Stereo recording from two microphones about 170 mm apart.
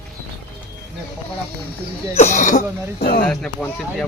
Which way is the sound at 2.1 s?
45° left (ahead or behind).